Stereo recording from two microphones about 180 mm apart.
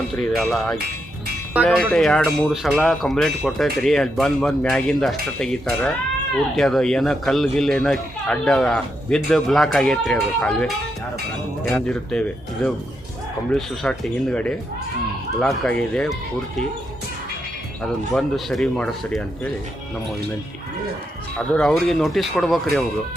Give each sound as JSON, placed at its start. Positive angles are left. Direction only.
{"t": 0.1, "sound": "speech", "side_deg": 0}
{"t": 11.7, "sound": "speech", "side_deg": 5}
{"t": 17.8, "sound": "speech", "side_deg": 0}
{"t": 21.3, "sound": "speech", "side_deg": 5}